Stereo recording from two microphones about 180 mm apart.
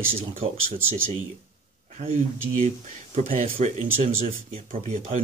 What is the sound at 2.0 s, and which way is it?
Speech, 40° right (ahead or behind).